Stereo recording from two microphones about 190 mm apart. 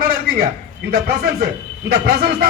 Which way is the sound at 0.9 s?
55° right (ahead or behind).